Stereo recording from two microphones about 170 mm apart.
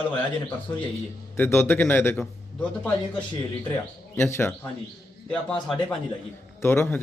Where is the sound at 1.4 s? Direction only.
15° left (ahead or behind).